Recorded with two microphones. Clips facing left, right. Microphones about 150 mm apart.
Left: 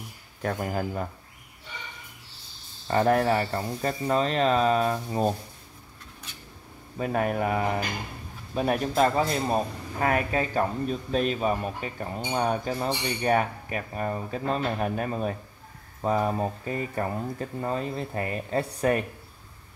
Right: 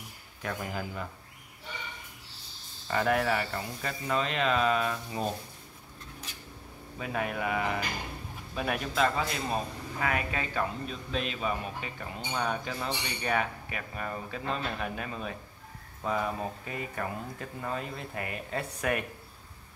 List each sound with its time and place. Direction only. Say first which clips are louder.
0.4 s speech: left 7 dB; 45° left (ahead or behind)
2.9 s a man's voice: left 5 dB; 40° left (ahead or behind)
7.0 s a man's voice: left 7 dB; 45° left (ahead or behind)